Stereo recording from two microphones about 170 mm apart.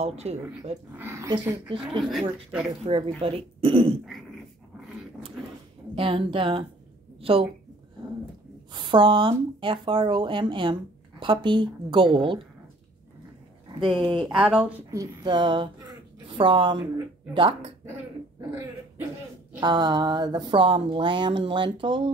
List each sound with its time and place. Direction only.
0.0 s speech: 40° right (ahead or behind)
0.9 s speech: 15° right (ahead or behind)
2.0 s speech: centre (ahead or behind)
2.8 s speech: 35° right (ahead or behind)
5.9 s a woman's voice: 30° right (ahead or behind)
8.7 s speech: 30° right (ahead or behind)
13.9 s speech: 30° right (ahead or behind)
14.2 s speech: 5° right (ahead or behind); by 17.6 s 30° right (ahead or behind)
19.6 s speech: 25° right (ahead or behind)